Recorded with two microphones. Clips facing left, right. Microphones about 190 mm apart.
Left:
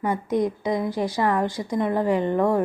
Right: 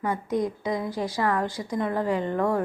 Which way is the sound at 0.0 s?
20° left (ahead or behind).